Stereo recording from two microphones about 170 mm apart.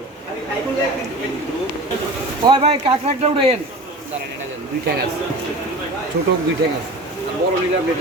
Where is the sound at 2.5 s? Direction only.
30° right (ahead or behind).